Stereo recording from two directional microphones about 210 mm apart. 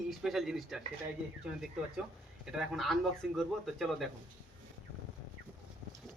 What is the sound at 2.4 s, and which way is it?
Speech, centre (ahead or behind).